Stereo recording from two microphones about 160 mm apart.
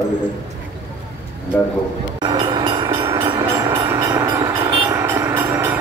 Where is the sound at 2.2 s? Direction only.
30° right (ahead or behind).